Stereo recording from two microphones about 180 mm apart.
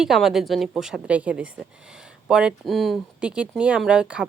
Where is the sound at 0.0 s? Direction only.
Centre (ahead or behind).